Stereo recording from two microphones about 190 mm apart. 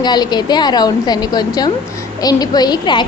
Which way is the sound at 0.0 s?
20° left (ahead or behind).